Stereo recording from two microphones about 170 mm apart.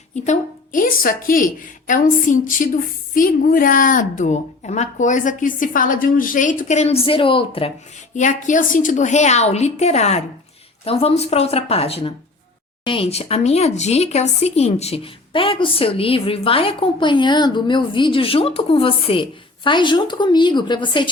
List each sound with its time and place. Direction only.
0.3 s a woman's voice: 50° left (ahead or behind); by 7.7 s 30° left (ahead or behind)
8.1 s speech: 45° left (ahead or behind); by 21.1 s 30° left (ahead or behind)